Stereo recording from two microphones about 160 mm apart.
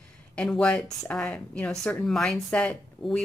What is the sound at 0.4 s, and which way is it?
Speech, 5° left (ahead or behind).